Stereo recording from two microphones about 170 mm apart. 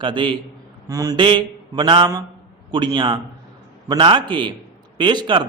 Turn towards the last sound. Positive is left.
turn(degrees=-25)  # may be behind; listen again after turning